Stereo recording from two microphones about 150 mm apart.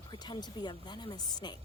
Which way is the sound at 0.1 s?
30° left (ahead or behind).